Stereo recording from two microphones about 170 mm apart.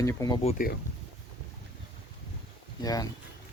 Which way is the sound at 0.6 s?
50° left (ahead or behind).